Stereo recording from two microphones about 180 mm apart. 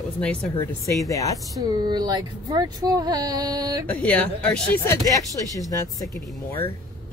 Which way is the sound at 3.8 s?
10° left (ahead or behind).